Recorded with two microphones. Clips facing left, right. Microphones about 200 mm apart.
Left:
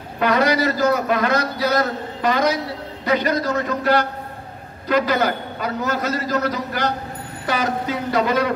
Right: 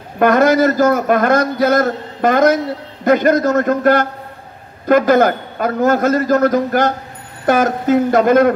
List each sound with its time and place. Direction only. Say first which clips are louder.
0.2 s a man's voice: right 7 dB; 50° right (ahead or behind)